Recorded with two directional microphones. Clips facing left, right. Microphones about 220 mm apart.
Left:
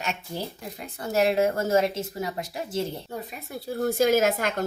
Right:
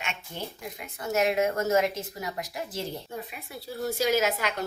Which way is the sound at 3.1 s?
40° left (ahead or behind).